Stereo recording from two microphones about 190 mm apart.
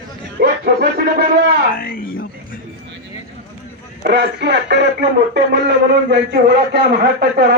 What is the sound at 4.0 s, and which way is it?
Speech, 65° right (ahead or behind).